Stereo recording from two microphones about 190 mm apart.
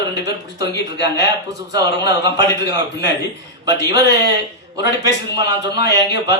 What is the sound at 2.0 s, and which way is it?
A man's voice, 65° left (ahead or behind).